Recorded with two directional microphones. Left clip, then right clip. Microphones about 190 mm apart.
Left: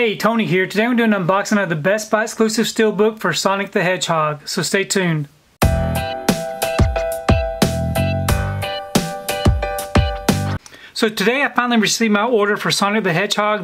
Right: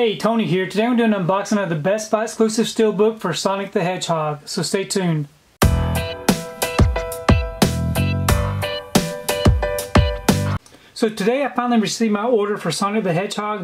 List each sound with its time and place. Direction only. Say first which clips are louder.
0.0 s speech: left 1 dB; 25° left (ahead or behind)
5.6 s music: left 2 dB; centre (ahead or behind)
11.0 s speech: left 2 dB; 20° left (ahead or behind)